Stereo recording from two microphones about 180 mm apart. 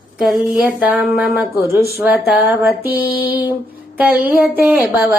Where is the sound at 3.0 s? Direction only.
55° left (ahead or behind).